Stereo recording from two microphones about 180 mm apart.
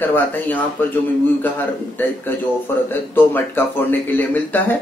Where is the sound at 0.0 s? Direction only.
10° left (ahead or behind).